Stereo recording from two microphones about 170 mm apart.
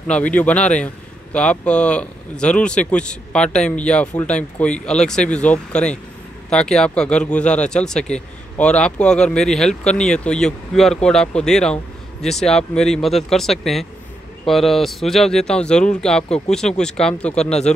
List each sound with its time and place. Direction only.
0.0 s speech: 5° left (ahead or behind)
17.4 s speech: 40° left (ahead or behind)